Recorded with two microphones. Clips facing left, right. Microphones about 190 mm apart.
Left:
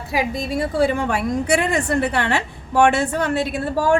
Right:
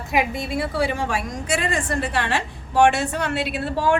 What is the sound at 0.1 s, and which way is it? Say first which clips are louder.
A woman's voice: left 1 dB; 35° left (ahead or behind).